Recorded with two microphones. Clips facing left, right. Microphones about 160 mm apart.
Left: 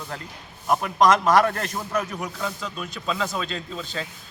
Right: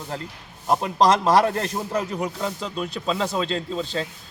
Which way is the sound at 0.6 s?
25° right (ahead or behind).